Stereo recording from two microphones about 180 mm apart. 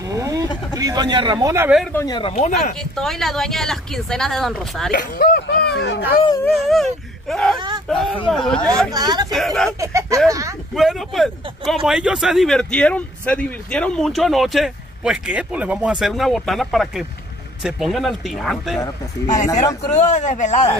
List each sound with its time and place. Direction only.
0.1 s vehicle: 20° right (ahead or behind)
0.7 s a man's voice: 20° right (ahead or behind)
2.0 s speech: 25° left (ahead or behind)
2.3 s a man's voice: 40° left (ahead or behind)
2.8 s speech: centre (ahead or behind)
4.9 s speech: 50° left (ahead or behind); by 6.1 s 75° left (ahead or behind)
6.5 s speech: centre (ahead or behind)
7.5 s speech: 25° right (ahead or behind)
7.9 s speech: 5° left (ahead or behind)
8.6 s a man's voice: 20° right (ahead or behind)
9.3 s speech: centre (ahead or behind)
9.8 s speech: 15° right (ahead or behind)
10.7 s speech: centre (ahead or behind)
20.0 s a man's voice: 40° left (ahead or behind)